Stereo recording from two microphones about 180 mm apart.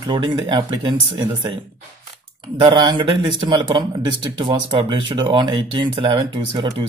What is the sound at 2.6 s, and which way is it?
Speech, 25° right (ahead or behind).